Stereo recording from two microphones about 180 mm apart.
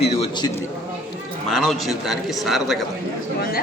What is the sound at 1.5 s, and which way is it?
A man's voice, centre (ahead or behind).